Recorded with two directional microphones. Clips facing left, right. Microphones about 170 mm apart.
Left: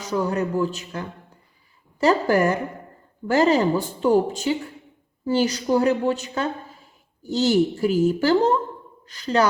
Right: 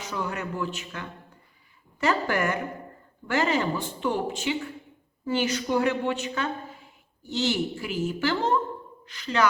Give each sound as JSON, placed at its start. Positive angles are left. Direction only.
{"t": 0.0, "sound": "a woman's voice", "side_deg": 40}